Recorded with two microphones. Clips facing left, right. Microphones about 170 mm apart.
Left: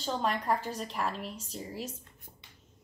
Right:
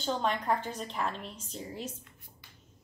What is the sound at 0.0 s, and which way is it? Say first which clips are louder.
Speech: right 1 dB; centre (ahead or behind).